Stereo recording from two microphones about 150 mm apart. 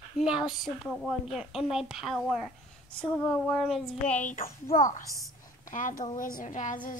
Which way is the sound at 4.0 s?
55° left (ahead or behind).